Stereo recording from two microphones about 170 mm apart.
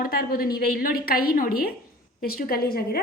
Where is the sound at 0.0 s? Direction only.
60° left (ahead or behind).